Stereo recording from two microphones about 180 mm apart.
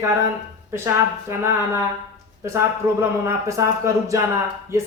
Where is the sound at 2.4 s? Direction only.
15° right (ahead or behind).